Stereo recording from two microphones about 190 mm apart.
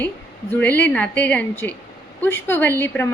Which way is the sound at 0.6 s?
10° left (ahead or behind).